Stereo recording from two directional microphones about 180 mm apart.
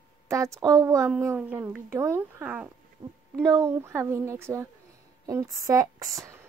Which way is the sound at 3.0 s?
25° right (ahead or behind).